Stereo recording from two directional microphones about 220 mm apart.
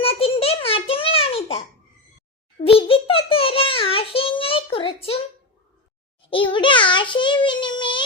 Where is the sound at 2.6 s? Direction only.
25° left (ahead or behind).